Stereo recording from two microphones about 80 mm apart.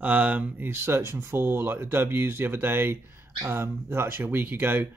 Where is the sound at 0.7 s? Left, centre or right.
Right.